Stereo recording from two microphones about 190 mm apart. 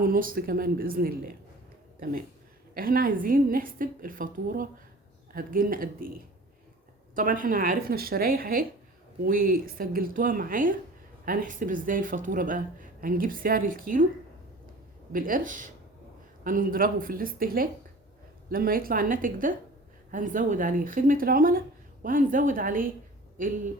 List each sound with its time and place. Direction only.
0.0 s speech: 50° right (ahead or behind)
2.7 s speech: 50° right (ahead or behind)
15.1 s speech: 45° right (ahead or behind)